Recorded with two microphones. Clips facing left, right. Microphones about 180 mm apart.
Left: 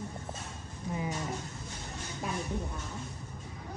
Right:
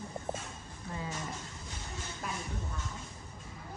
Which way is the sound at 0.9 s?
15° left (ahead or behind).